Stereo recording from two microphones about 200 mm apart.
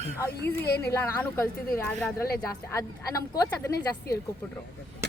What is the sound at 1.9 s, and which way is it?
Speech, centre (ahead or behind).